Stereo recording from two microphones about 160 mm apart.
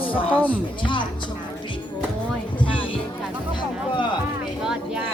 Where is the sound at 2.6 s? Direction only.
30° left (ahead or behind).